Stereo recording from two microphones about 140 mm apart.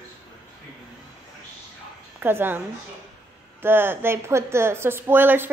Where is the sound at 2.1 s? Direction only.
15° right (ahead or behind).